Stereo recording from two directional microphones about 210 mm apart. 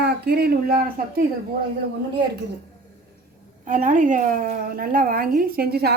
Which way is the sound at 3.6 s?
40° right (ahead or behind).